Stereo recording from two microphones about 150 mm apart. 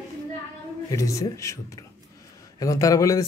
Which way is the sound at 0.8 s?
20° left (ahead or behind).